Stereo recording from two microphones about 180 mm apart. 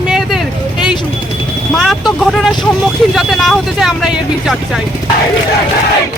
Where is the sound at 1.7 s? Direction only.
Centre (ahead or behind).